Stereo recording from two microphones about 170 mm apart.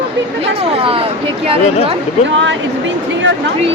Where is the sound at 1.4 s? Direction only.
35° right (ahead or behind).